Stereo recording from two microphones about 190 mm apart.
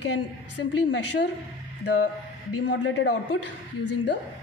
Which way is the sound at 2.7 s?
75° left (ahead or behind).